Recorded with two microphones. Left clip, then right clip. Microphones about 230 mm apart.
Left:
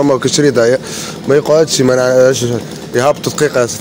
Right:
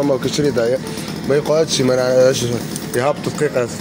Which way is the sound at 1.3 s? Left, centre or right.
Left.